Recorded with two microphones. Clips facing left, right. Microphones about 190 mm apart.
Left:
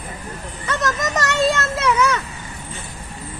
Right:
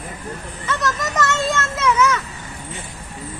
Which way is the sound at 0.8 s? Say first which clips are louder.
Even; 40° left (ahead or behind).